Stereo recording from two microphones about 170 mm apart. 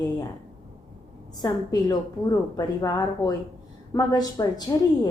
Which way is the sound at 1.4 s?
25° left (ahead or behind).